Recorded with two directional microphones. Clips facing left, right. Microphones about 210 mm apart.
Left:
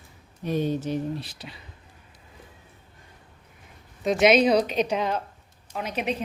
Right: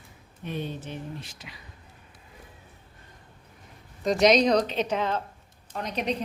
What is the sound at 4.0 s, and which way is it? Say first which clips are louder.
A woman's voice: left 1 dB; 5° left (ahead or behind).